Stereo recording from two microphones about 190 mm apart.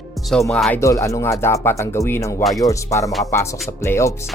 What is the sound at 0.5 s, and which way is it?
Speech, 5° left (ahead or behind).